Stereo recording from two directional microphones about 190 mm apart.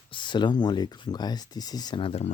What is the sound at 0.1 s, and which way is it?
Speech, 25° left (ahead or behind).